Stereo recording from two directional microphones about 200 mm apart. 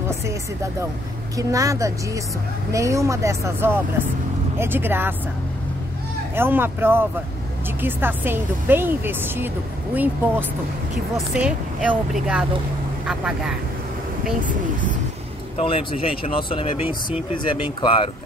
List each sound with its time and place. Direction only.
1.3 s a woman's voice: 15° right (ahead or behind)
6.3 s a woman's voice: 10° right (ahead or behind)
15.5 s speech: 30° left (ahead or behind)